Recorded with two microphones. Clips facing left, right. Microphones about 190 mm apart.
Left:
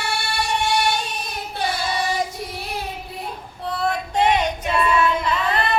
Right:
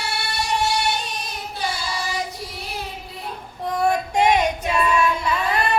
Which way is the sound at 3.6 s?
10° right (ahead or behind).